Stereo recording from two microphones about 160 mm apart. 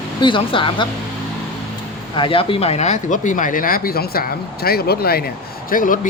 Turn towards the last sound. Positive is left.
turn(degrees=60)  # may be behind; listen again after turning